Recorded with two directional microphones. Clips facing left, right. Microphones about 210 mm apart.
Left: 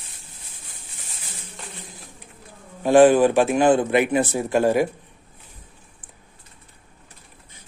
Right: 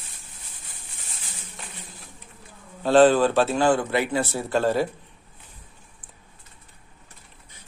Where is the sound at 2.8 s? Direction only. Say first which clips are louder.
Left 3 dB; 15° left (ahead or behind).